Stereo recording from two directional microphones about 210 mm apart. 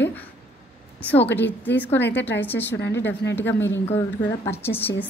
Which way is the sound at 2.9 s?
55° left (ahead or behind).